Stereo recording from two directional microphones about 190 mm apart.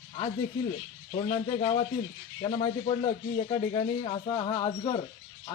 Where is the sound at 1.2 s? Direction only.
25° left (ahead or behind).